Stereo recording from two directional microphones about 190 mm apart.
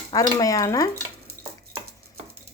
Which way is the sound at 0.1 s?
20° left (ahead or behind).